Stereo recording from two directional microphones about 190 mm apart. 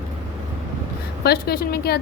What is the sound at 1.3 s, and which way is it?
Speech, 55° left (ahead or behind).